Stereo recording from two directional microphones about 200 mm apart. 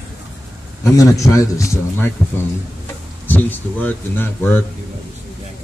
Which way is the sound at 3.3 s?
10° left (ahead or behind).